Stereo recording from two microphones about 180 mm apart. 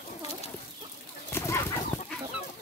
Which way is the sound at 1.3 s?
15° left (ahead or behind).